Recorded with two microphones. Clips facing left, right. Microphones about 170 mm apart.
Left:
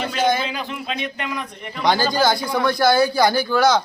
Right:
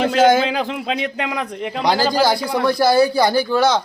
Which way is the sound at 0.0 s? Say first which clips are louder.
Right 7 dB; 90° right.